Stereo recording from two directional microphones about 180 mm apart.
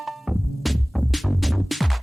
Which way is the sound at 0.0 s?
Centre (ahead or behind).